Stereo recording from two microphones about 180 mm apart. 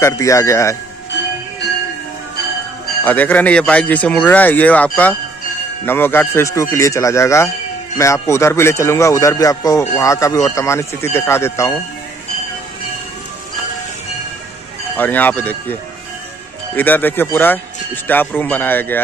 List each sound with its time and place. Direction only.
0.0 s speech: 15° left (ahead or behind)
3.0 s speech: 10° left (ahead or behind)
15.0 s speech: 10° left (ahead or behind)